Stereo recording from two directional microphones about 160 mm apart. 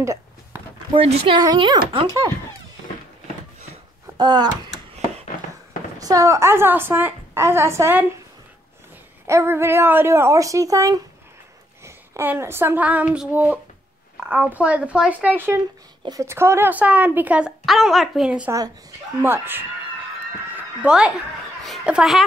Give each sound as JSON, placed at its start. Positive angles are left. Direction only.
{"t": 0.0, "sound": "a sound", "side_deg": -20}
{"t": 0.9, "sound": "a woman's voice", "side_deg": -35}
{"t": 1.4, "sound": "speech", "side_deg": -25}
{"t": 4.2, "sound": "speech", "side_deg": -25}
{"t": 5.9, "sound": "a woman's voice", "side_deg": -20}
{"t": 9.3, "sound": "a woman's voice", "side_deg": -15}
{"t": 20.5, "sound": "music", "side_deg": -5}
{"t": 21.6, "sound": "a woman's voice", "side_deg": -5}